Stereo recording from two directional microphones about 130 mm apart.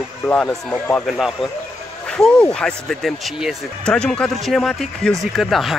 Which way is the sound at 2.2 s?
5° left (ahead or behind).